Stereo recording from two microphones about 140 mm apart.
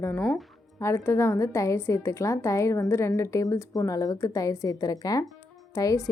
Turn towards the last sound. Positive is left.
turn(degrees=20)  # may be behind; listen again after turning